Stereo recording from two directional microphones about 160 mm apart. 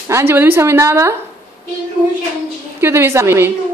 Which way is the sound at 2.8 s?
15° right (ahead or behind).